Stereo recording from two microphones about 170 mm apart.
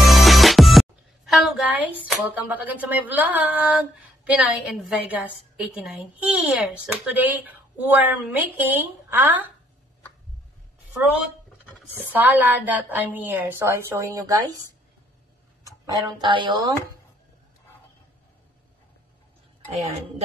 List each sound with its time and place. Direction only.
0.0 s music: centre (ahead or behind)
4.2 s a woman's voice: 5° right (ahead or behind)
12.0 s a woman's voice: 10° right (ahead or behind)
16.2 s speech: 30° right (ahead or behind)